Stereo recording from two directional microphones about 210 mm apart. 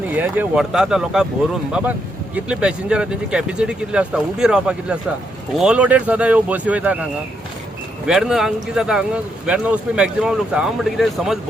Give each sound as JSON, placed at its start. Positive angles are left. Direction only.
{"t": 0.1, "sound": "speech", "side_deg": -10}
{"t": 8.0, "sound": "speech", "side_deg": -5}